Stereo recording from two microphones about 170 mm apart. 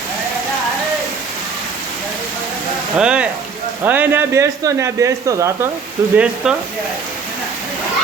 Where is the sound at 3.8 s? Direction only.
10° right (ahead or behind).